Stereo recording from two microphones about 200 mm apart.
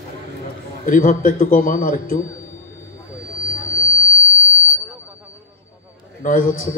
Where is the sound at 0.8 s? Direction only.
40° left (ahead or behind).